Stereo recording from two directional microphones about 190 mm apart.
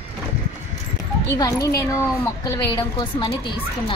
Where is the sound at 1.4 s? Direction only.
15° left (ahead or behind).